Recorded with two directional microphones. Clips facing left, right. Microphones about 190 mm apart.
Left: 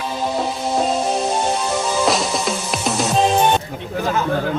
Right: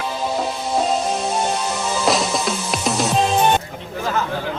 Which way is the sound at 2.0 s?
Centre (ahead or behind).